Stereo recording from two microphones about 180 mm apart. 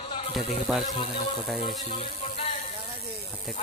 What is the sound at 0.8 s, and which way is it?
Speech, 30° left (ahead or behind).